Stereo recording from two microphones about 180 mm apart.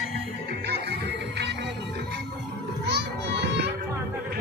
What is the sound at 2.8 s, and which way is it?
Children playing, 70° right (ahead or behind).